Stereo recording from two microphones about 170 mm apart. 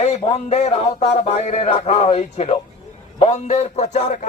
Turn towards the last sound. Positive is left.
turn(degrees=40)  # may be behind; listen again after turning